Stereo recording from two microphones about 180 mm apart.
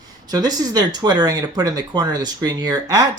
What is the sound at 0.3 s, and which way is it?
Speech, 20° right (ahead or behind).